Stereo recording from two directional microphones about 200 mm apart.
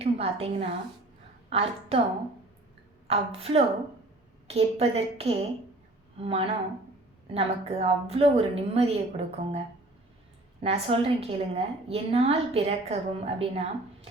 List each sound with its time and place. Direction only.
0.0 s a woman's voice: 30° right (ahead or behind)
3.1 s a woman's voice: 30° right (ahead or behind)
10.6 s a woman's voice: 30° right (ahead or behind)